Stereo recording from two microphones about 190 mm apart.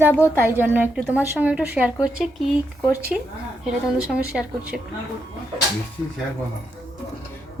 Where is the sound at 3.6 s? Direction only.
5° right (ahead or behind).